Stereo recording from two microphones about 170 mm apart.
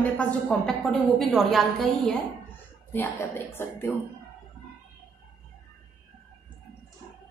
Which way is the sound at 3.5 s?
15° left (ahead or behind).